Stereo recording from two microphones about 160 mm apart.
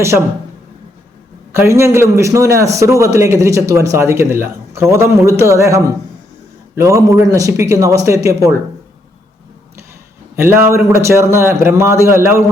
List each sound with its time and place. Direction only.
1.5 s a man's voice: 15° right (ahead or behind)
10.3 s a man's voice: 15° right (ahead or behind)